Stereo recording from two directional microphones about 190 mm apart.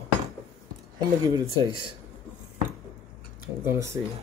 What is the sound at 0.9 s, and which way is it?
Speech, 20° right (ahead or behind).